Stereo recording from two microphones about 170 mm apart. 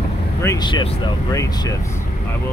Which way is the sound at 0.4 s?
20° left (ahead or behind).